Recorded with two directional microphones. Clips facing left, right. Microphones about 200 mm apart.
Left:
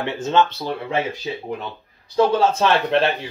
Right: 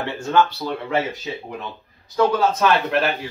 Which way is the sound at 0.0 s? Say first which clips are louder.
Even; 20° left (ahead or behind).